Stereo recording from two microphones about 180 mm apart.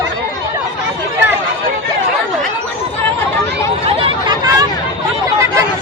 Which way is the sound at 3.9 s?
30° right (ahead or behind).